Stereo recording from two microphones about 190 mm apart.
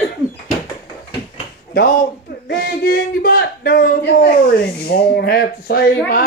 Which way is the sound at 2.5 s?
55° left (ahead or behind).